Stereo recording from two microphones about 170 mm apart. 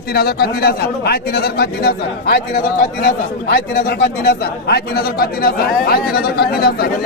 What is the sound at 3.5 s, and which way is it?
Speech, 65° left (ahead or behind).